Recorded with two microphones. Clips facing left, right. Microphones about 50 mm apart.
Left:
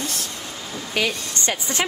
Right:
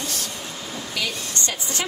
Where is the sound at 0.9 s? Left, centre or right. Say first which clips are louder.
Left 5 dB; left.